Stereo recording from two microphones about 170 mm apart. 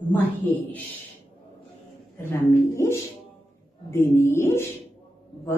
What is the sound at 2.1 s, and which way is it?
Speech, 15° left (ahead or behind).